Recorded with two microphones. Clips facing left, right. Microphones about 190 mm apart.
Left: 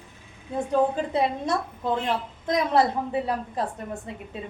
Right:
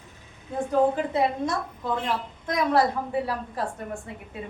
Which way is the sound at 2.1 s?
20° left (ahead or behind).